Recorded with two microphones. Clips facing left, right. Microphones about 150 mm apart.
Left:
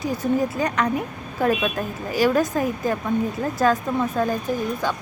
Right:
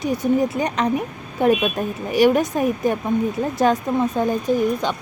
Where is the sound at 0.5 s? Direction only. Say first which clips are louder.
Right 2 dB; 20° right (ahead or behind).